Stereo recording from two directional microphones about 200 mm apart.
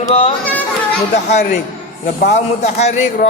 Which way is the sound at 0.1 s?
25° left (ahead or behind).